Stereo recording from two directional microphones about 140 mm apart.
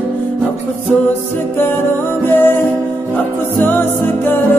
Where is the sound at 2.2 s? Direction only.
15° left (ahead or behind).